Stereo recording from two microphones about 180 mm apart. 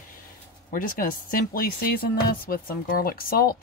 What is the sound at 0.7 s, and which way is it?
Speech, 50° left (ahead or behind).